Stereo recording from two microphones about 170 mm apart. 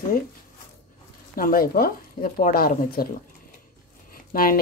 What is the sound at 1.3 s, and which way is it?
Speech, 60° left (ahead or behind).